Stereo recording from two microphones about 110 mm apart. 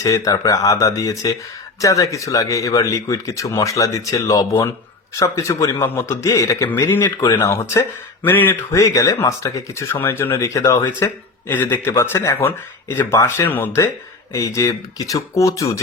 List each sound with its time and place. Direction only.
0.0 s speech: 30° left (ahead or behind)
7.3 s speech: 20° left (ahead or behind)
14.3 s speech: 30° left (ahead or behind)